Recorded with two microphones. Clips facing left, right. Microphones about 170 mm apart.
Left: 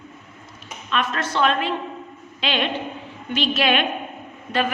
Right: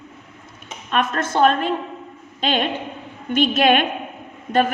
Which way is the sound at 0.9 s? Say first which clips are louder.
Right 3 dB; 50° right (ahead or behind).